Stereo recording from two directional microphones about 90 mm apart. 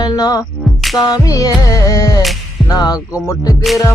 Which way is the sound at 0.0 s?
45° left (ahead or behind).